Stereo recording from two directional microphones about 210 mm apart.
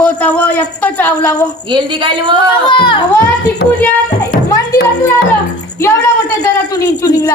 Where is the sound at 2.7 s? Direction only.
25° left (ahead or behind).